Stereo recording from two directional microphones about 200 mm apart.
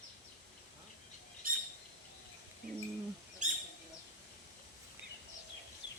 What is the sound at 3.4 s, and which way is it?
Bird, 40° right (ahead or behind).